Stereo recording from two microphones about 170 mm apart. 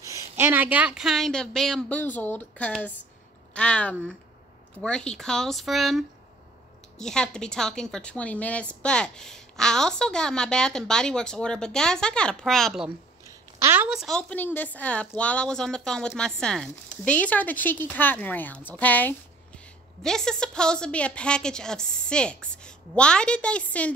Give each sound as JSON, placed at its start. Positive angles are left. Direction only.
{"t": 0.0, "sound": "a woman's voice", "side_deg": -15}
{"t": 13.2, "sound": "a sound", "side_deg": -15}
{"t": 13.8, "sound": "a woman's voice", "side_deg": 0}